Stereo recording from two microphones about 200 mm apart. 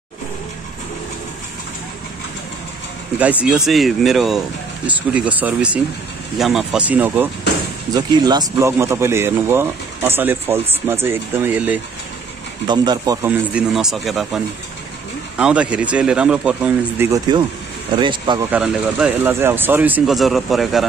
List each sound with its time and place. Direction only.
3.4 s speech: centre (ahead or behind)
7.9 s speech: 20° right (ahead or behind)
12.6 s speech: 20° right (ahead or behind); by 17.1 s 5° right (ahead or behind)
17.3 s speech: 20° right (ahead or behind)
18.5 s speech: 5° right (ahead or behind)